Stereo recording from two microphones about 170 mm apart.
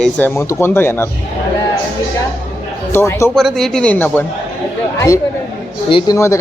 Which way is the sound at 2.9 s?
15° left (ahead or behind).